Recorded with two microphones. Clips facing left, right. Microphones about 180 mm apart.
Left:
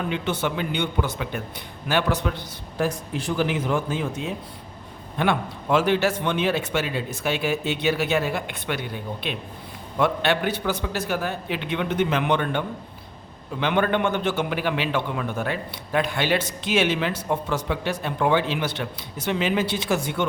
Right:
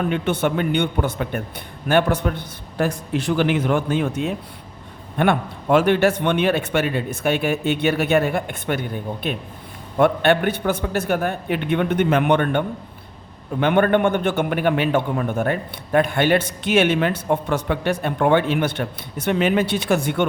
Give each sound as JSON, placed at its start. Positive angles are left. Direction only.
{"t": 0.1, "sound": "a man's voice", "side_deg": -55}